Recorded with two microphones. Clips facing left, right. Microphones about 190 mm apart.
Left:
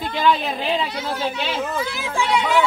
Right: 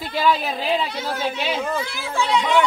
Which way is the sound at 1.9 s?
15° left (ahead or behind).